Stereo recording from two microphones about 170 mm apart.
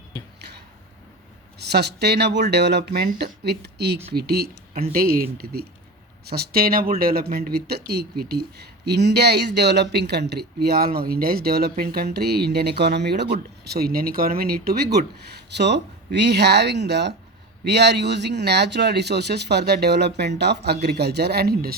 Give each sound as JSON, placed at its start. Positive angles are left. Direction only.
{"t": 1.5, "sound": "speech", "side_deg": -75}
{"t": 3.4, "sound": "speech", "side_deg": -75}
{"t": 13.7, "sound": "speech", "side_deg": -65}